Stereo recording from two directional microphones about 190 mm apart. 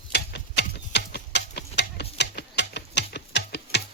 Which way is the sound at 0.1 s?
65° left (ahead or behind).